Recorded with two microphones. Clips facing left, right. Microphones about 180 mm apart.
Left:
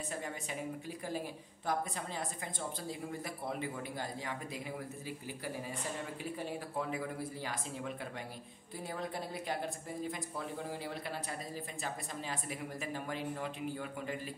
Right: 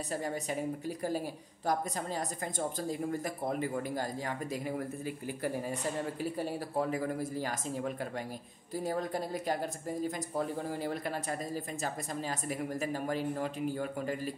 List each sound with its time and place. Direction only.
0.1 s a woman's voice: 40° right (ahead or behind)